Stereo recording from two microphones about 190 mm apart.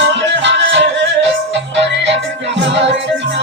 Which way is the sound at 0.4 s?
70° right (ahead or behind).